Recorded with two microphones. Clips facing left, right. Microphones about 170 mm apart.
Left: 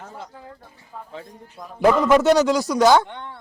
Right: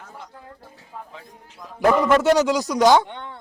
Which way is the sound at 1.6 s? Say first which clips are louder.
Left 2 dB; 50° left (ahead or behind).